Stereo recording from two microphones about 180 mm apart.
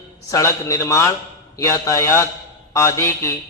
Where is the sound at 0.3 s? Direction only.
20° left (ahead or behind).